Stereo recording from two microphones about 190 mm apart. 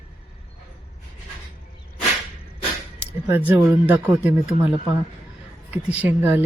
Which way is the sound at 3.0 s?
10° right (ahead or behind).